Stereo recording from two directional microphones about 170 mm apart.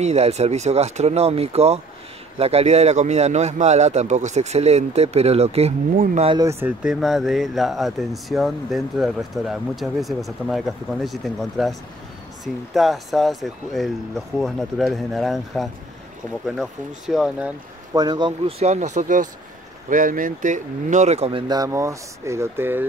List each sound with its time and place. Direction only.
0.0 s a man's voice: 40° right (ahead or behind)
6.3 s speech: 15° right (ahead or behind)
6.8 s speech: centre (ahead or behind)
12.7 s speech: centre (ahead or behind)
17.9 s a man's voice: 25° right (ahead or behind)